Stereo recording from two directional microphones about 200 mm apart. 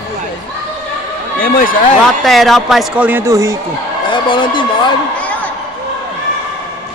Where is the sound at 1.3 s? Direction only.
45° left (ahead or behind).